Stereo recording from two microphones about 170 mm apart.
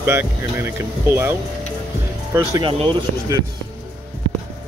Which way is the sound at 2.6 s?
30° right (ahead or behind).